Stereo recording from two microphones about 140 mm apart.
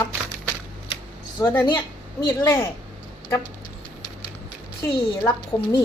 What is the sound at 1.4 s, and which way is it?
Speech, 30° left (ahead or behind).